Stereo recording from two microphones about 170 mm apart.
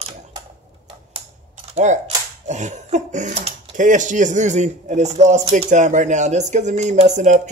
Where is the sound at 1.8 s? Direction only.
45° right (ahead or behind).